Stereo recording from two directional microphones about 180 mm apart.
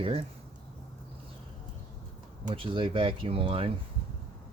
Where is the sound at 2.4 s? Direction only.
30° right (ahead or behind).